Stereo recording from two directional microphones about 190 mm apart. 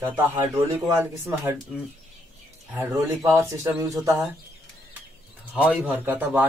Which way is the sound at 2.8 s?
15° right (ahead or behind).